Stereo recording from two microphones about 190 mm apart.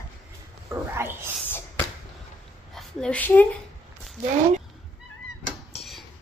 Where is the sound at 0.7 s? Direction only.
10° right (ahead or behind).